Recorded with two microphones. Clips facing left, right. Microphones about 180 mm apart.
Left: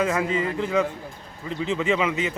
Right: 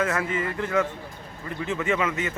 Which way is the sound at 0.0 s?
15° left (ahead or behind).